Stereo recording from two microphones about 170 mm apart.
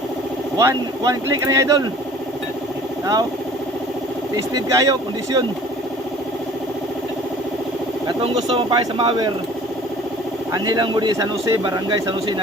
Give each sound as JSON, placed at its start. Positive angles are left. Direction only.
{"t": 0.6, "sound": "speech", "side_deg": -20}
{"t": 4.4, "sound": "speech", "side_deg": -20}
{"t": 8.0, "sound": "speech", "side_deg": -30}
{"t": 10.5, "sound": "speech", "side_deg": -25}